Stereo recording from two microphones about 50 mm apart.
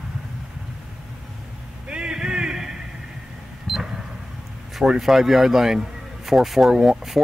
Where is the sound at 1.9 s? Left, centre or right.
Centre.